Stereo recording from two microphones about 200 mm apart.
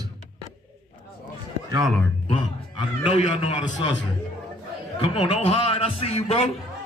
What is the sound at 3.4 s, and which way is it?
Speech, 25° left (ahead or behind).